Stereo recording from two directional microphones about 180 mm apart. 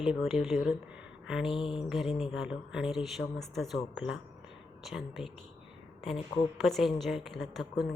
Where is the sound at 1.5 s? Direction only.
30° left (ahead or behind).